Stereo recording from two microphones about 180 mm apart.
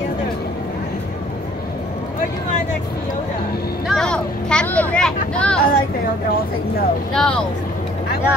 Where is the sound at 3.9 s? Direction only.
5° left (ahead or behind).